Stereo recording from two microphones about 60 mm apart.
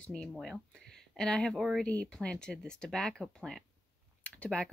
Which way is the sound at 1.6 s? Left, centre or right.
Centre.